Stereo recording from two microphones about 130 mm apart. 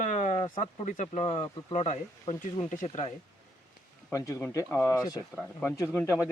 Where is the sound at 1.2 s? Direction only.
45° left (ahead or behind).